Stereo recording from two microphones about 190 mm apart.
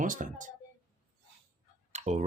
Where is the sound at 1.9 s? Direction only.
35° right (ahead or behind).